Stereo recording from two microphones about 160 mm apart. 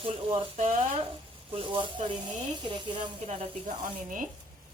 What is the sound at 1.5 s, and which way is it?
Speech, 30° right (ahead or behind).